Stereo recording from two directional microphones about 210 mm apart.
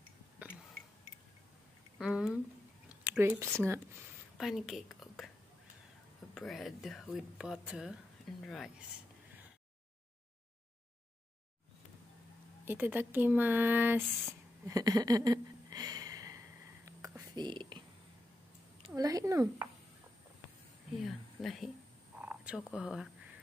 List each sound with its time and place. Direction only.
2.0 s a sound: 5° right (ahead or behind)
3.0 s speech: 10° right (ahead or behind)
4.4 s a woman's voice: centre (ahead or behind)
6.3 s speech: centre (ahead or behind)
12.6 s speech: 10° right (ahead or behind)
14.7 s a sound: 15° right (ahead or behind)
18.9 s speech: 15° right (ahead or behind)
21.0 s speech: centre (ahead or behind)
22.2 s purr: 5° right (ahead or behind)
22.6 s speech: centre (ahead or behind)